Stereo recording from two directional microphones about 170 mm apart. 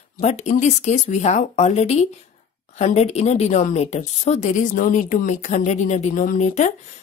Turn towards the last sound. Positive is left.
turn(degrees=45)  # may be behind; listen again after turning